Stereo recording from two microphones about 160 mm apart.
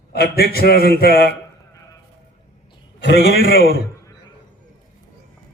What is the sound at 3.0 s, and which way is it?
Speech, 90° left.